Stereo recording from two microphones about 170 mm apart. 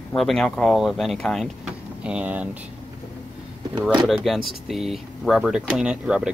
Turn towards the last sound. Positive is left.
turn(degrees=-5)  # may be behind; listen again after turning